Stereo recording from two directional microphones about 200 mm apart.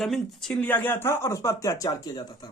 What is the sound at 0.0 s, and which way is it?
Speech, centre (ahead or behind).